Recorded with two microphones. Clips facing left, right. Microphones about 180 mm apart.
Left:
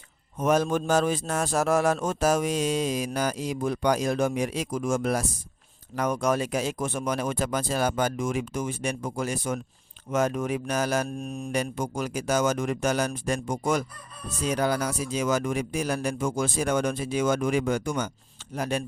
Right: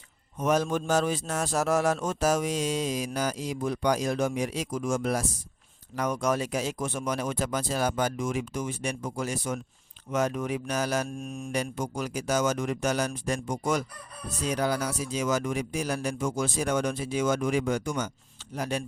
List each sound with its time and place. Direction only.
0.3 s a man's voice: 50° left (ahead or behind)
11.2 s mantra: 35° left (ahead or behind)
11.5 s a man's voice: 55° left (ahead or behind)